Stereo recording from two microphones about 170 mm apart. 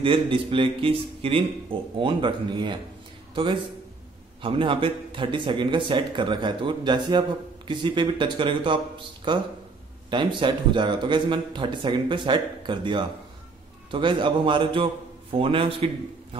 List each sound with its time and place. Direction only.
0.0 s a man's voice: 30° right (ahead or behind)
4.4 s a man's voice: 30° right (ahead or behind)